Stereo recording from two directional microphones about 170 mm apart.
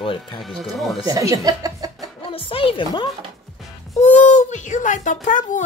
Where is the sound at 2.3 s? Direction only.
30° left (ahead or behind).